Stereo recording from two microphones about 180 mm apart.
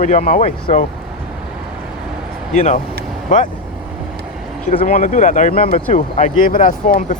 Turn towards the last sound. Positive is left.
turn(degrees=50)  # may be behind; listen again after turning